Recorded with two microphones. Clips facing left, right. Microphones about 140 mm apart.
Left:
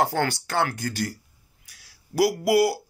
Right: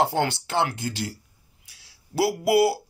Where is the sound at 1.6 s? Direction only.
25° right (ahead or behind).